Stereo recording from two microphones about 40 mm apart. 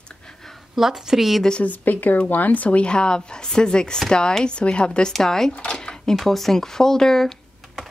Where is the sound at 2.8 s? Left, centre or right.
Left.